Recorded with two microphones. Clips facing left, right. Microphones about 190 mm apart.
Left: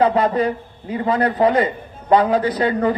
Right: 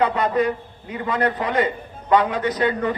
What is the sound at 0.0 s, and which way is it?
A man's voice, 35° left (ahead or behind).